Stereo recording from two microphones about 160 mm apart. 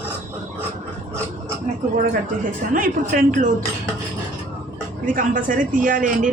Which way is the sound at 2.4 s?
60° right (ahead or behind).